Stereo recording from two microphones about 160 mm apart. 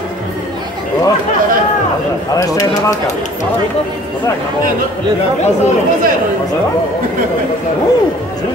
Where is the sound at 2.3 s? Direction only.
20° left (ahead or behind).